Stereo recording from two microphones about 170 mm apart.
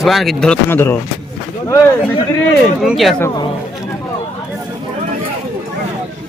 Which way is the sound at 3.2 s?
15° left (ahead or behind).